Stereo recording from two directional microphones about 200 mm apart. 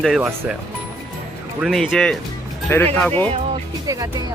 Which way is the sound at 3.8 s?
15° right (ahead or behind).